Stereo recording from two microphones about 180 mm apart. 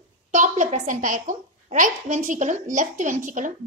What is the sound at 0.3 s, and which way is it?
A woman's voice, 40° right (ahead or behind).